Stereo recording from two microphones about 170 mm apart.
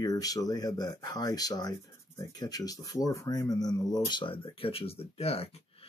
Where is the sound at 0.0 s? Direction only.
20° left (ahead or behind).